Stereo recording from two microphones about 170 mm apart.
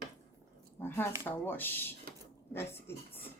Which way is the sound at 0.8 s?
10° left (ahead or behind).